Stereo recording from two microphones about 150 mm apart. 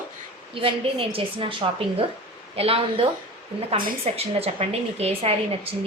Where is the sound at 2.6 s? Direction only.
40° right (ahead or behind).